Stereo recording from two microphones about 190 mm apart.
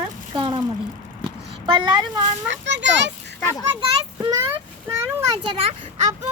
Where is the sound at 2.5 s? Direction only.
70° right (ahead or behind).